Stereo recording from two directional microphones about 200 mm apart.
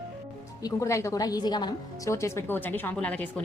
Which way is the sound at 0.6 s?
15° left (ahead or behind).